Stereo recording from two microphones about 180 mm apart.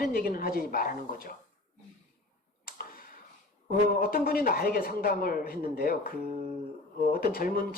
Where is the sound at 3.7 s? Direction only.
55° left (ahead or behind).